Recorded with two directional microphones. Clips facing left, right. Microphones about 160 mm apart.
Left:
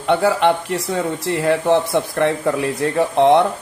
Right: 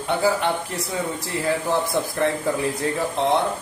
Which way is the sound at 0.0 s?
70° left (ahead or behind).